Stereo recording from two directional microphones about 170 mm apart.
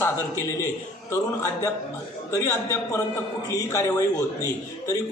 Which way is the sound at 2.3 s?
15° left (ahead or behind).